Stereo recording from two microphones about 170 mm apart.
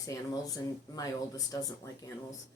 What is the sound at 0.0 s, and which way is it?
Speech, 20° left (ahead or behind).